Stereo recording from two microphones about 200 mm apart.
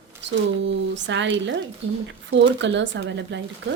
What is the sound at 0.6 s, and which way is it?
Speech, 65° right (ahead or behind).